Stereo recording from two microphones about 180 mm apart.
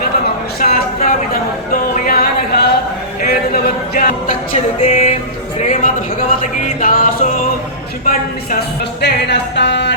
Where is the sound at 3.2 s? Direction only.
55° left (ahead or behind).